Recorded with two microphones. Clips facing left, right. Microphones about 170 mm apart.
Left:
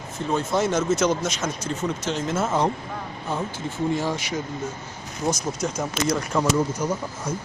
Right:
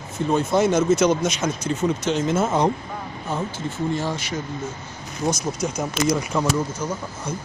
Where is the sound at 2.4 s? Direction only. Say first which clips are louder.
Even; 20° right (ahead or behind).